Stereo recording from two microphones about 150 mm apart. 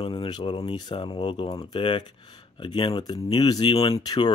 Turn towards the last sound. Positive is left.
turn(degrees=30)  # may be behind; listen again after turning